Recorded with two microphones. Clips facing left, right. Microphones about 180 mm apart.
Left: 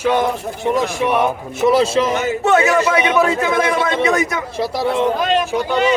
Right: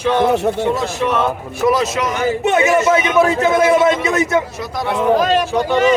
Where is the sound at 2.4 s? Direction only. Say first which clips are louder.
Even; 20° right (ahead or behind).